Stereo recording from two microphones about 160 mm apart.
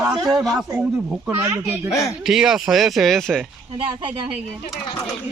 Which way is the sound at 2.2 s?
5° right (ahead or behind).